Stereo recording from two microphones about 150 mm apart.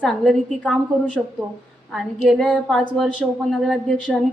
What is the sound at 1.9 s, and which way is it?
A woman's voice, centre (ahead or behind).